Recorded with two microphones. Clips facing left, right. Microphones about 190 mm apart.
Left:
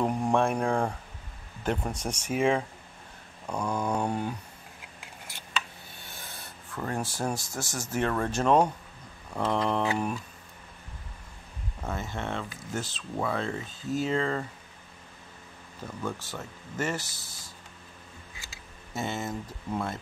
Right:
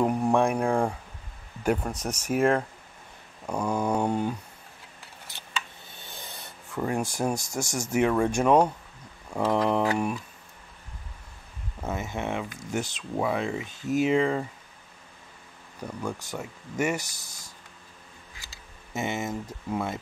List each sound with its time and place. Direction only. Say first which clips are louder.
0.0 s speech: right 3 dB; 10° right (ahead or behind)
6.0 s a sound: right 3 dB; 20° right (ahead or behind)
7.5 s speech: right 5 dB; 15° right (ahead or behind)
11.8 s speech: right 3 dB; 15° right (ahead or behind)
15.8 s speech: right 2 dB; 15° right (ahead or behind)
18.9 s speech: right 2 dB; 15° right (ahead or behind)